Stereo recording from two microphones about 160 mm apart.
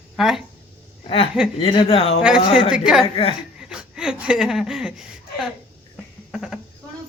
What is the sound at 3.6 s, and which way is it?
Speech, 5° right (ahead or behind).